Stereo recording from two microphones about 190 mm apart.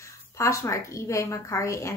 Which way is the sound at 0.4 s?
15° left (ahead or behind).